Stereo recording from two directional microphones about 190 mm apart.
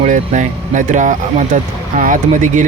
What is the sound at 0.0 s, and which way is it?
Speech, 40° right (ahead or behind).